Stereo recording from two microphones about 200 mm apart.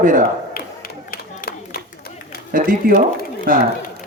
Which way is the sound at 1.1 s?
50° left (ahead or behind).